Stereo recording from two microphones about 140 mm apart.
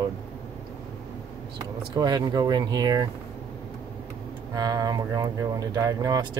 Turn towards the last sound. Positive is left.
turn(degrees=-25)  # may be behind; listen again after turning